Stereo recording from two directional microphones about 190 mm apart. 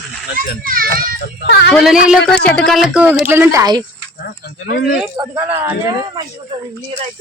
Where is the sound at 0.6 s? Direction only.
50° right (ahead or behind).